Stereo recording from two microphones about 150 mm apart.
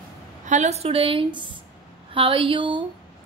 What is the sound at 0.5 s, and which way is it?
A woman's voice, 50° right (ahead or behind).